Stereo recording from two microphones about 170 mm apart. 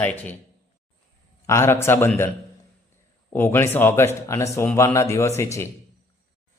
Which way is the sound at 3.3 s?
15° left (ahead or behind).